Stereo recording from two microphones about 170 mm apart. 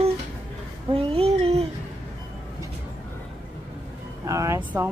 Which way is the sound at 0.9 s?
35° right (ahead or behind).